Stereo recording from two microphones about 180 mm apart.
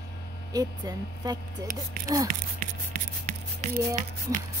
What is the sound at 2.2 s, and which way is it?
Speech, 55° right (ahead or behind).